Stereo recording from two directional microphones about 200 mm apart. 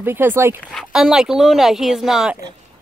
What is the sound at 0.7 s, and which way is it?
Speech, centre (ahead or behind).